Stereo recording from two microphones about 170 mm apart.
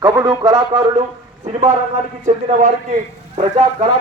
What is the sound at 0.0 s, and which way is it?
Speech, 20° right (ahead or behind).